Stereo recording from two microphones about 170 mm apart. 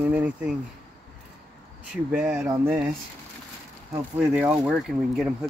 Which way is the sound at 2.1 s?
10° right (ahead or behind).